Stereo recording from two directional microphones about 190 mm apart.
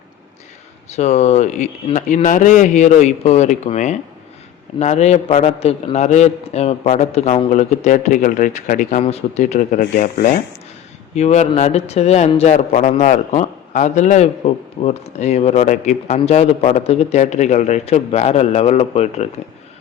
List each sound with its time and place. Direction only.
0.9 s a man's voice: 35° left (ahead or behind)